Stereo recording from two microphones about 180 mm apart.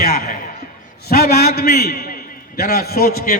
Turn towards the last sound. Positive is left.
turn(degrees=55)  # may be behind; listen again after turning